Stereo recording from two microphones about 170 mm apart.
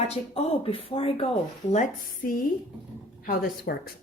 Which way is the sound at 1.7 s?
45° left (ahead or behind).